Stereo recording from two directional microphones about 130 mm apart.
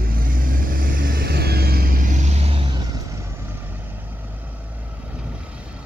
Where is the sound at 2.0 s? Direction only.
70° right (ahead or behind); by 2.7 s 50° right (ahead or behind).